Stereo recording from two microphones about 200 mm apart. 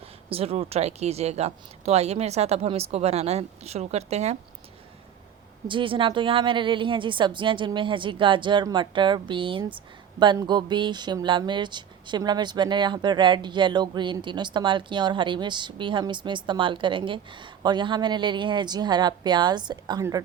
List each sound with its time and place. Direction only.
0.3 s speech: 30° right (ahead or behind)
5.6 s speech: 25° right (ahead or behind)